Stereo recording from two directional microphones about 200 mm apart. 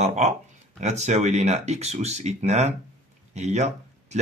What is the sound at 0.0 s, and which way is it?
Speech, 35° right (ahead or behind).